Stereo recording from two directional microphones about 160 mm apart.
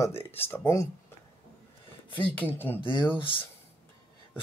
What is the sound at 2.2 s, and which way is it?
Speech, 10° left (ahead or behind).